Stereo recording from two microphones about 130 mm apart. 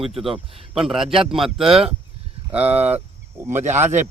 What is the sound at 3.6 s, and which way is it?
Speech, 65° right (ahead or behind).